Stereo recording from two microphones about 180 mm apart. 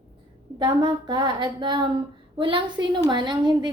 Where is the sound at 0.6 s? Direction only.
25° right (ahead or behind).